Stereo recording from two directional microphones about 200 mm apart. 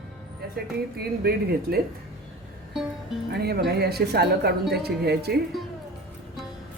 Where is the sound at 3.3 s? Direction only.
50° right (ahead or behind).